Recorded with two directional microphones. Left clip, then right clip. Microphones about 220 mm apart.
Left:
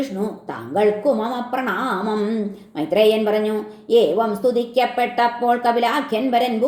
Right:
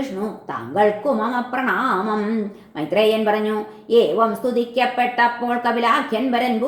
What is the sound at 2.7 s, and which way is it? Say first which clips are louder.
A woman's voice: left 1 dB; 35° left (ahead or behind).